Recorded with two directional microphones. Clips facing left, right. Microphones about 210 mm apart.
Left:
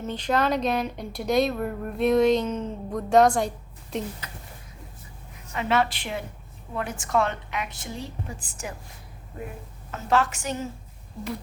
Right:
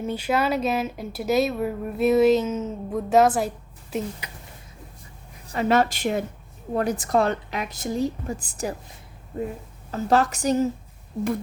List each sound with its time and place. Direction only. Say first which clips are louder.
0.0 s speech: right 1 dB; 10° right (ahead or behind)
5.5 s a woman's voice: right 4 dB; 40° right (ahead or behind)
9.9 s a woman's voice: right 3 dB; 40° right (ahead or behind)